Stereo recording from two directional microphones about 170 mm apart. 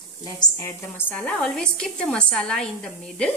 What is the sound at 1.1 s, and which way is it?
A woman's voice, 5° left (ahead or behind).